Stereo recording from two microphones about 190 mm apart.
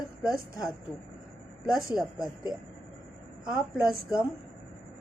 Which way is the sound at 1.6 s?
Centre (ahead or behind).